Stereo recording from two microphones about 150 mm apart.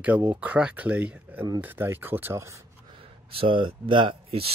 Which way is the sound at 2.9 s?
35° right (ahead or behind).